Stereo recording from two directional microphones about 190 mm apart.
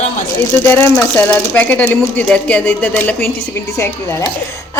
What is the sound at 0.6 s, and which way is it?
Speech, 10° left (ahead or behind).